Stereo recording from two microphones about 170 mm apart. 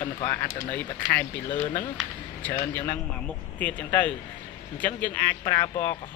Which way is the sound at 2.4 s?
10° left (ahead or behind).